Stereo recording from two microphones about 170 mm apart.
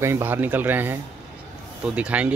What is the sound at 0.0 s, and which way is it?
Speech, 15° right (ahead or behind).